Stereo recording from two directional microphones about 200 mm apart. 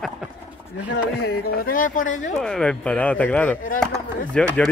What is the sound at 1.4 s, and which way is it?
Speech, 45° left (ahead or behind).